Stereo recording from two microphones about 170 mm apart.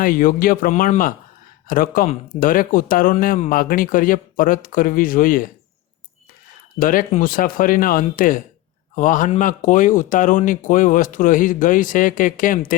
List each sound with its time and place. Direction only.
0.0 s speech: 55° left (ahead or behind)
6.7 s speech: 55° left (ahead or behind)